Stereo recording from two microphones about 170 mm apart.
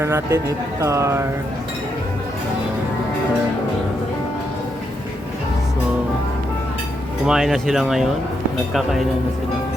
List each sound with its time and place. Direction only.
0.0 s speech: 15° right (ahead or behind)
7.3 s speech: 5° right (ahead or behind)